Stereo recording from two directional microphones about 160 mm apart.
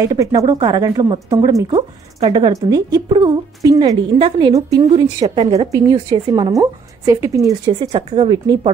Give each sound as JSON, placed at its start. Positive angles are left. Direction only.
{"t": 0.0, "sound": "a woman's voice", "side_deg": -20}
{"t": 5.2, "sound": "speech", "side_deg": -35}
{"t": 5.7, "sound": "a woman's voice", "side_deg": -20}
{"t": 7.6, "sound": "speech", "side_deg": -30}